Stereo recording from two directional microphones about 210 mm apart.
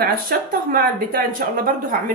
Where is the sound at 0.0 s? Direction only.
45° right (ahead or behind).